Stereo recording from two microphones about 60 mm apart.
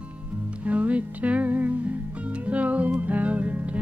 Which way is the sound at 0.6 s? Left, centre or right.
Right.